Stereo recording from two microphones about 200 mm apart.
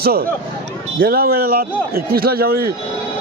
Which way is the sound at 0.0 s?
50° right (ahead or behind).